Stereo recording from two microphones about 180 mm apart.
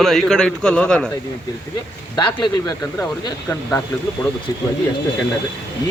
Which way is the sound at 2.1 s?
25° left (ahead or behind).